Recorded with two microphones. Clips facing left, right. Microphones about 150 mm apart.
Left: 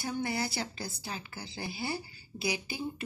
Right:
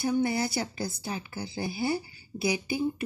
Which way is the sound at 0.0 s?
20° right (ahead or behind).